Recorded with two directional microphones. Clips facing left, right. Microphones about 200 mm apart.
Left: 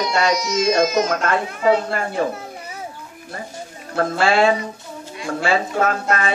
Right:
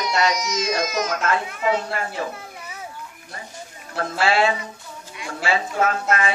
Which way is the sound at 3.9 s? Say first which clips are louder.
Left 4 dB; 45° left (ahead or behind).